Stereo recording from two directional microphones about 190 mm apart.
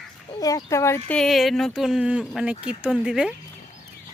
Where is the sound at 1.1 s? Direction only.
5° left (ahead or behind).